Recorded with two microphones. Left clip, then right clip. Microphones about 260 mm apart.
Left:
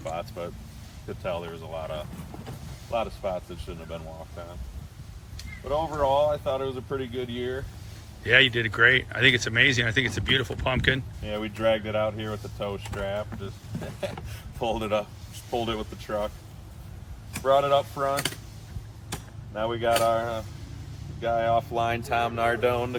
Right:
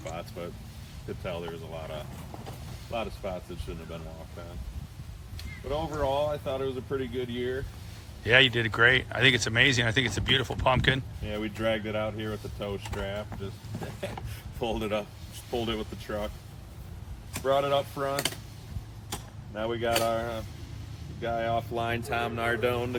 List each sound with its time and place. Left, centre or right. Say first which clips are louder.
0.0 s speech: left 5 dB; centre
5.6 s speech: left 5 dB; centre
8.2 s speech: left 2 dB; centre
11.2 s speech: left 4 dB; centre
13.7 s speech: left 2 dB; right
14.8 s speech: left 4 dB; centre
17.4 s speech: left 4 dB; centre
19.5 s speech: left 4 dB; centre